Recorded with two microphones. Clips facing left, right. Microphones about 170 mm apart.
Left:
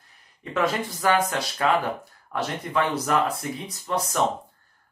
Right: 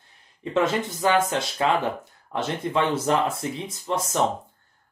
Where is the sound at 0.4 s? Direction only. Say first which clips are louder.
Right 2 dB; 25° right (ahead or behind).